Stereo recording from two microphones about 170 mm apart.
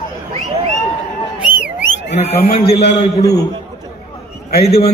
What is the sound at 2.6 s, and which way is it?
Speech, 75° left (ahead or behind).